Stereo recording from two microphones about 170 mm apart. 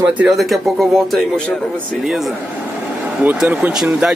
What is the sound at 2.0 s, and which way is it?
Speech, 5° right (ahead or behind).